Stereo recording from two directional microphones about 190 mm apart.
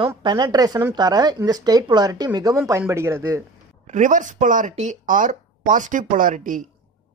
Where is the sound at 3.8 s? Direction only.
40° right (ahead or behind).